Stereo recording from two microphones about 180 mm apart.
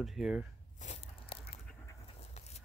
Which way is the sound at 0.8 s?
40° left (ahead or behind).